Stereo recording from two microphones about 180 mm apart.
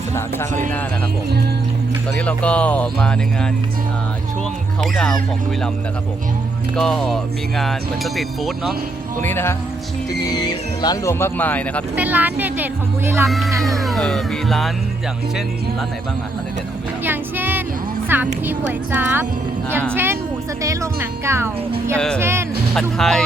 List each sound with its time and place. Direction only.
2.1 s speech: 5° left (ahead or behind)
4.9 s speech: 5° left (ahead or behind)
6.7 s speech: 5° left (ahead or behind)
9.2 s speech: 15° left (ahead or behind)
10.2 s speech: 25° left (ahead or behind); by 11.8 s 10° left (ahead or behind)
11.9 s speech: 10° right (ahead or behind)
13.5 s speech: 20° right (ahead or behind)
13.7 s speech: centre (ahead or behind)
17.0 s music: 10° right (ahead or behind)
18.4 s speech: 10° right (ahead or behind)
21.9 s speech: 5° left (ahead or behind)
22.2 s speech: 15° right (ahead or behind)
22.7 s speech: 5° left (ahead or behind)